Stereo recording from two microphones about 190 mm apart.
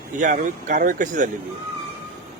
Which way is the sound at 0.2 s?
45° right (ahead or behind).